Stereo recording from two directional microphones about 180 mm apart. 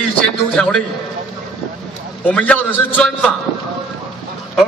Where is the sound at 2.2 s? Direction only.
10° left (ahead or behind).